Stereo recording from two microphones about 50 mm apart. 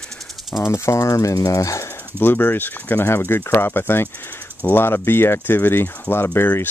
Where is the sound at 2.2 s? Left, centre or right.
Left.